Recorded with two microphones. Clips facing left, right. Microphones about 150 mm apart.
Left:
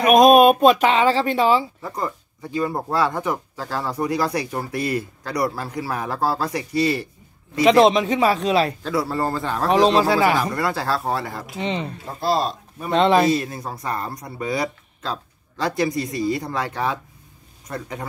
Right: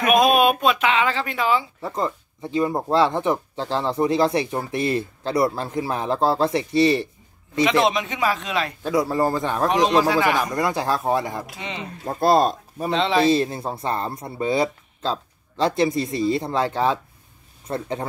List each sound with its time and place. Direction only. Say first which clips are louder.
0.0 s speech: left 5 dB; 40° left (ahead or behind)
1.8 s speech: right 2 dB; 25° right (ahead or behind)
7.6 s speech: left 5 dB; 35° left (ahead or behind)
8.8 s speech: right 2 dB; 15° right (ahead or behind)
9.7 s speech: left 3 dB; 35° left (ahead or behind)
10.5 s speech: right 1 dB; 20° right (ahead or behind)
11.6 s speech: left 7 dB; 35° left (ahead or behind)
12.1 s speech: right 5 dB; 50° right (ahead or behind)
12.9 s speech: left 5 dB; 50° left (ahead or behind)
13.2 s speech: right 1 dB; 30° right (ahead or behind)